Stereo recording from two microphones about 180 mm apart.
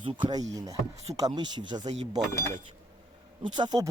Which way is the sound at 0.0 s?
25° right (ahead or behind).